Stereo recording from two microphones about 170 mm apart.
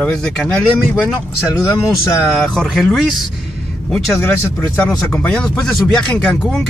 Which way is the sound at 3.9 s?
15° left (ahead or behind).